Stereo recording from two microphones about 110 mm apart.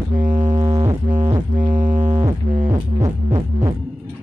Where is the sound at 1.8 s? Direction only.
90° right.